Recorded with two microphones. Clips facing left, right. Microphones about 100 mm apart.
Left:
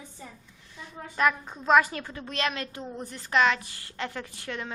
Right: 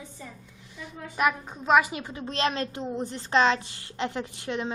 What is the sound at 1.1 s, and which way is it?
A woman's voice, 10° right (ahead or behind).